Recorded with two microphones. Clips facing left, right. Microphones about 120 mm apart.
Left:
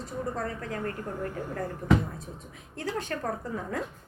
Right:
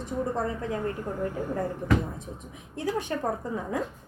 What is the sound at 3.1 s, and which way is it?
Speech, 15° right (ahead or behind).